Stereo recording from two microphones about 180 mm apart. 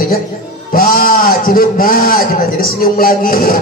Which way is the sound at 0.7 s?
55° left (ahead or behind).